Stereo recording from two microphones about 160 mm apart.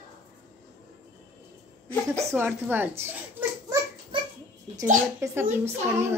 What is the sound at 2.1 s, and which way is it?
A child's voice, 15° right (ahead or behind).